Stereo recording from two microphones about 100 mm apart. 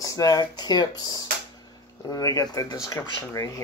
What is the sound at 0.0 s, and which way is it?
Speech, 35° left (ahead or behind).